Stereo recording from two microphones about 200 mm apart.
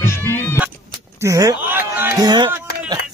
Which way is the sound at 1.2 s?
15° right (ahead or behind).